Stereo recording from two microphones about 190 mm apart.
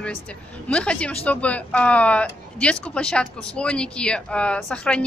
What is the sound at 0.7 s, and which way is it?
Speech, 5° left (ahead or behind).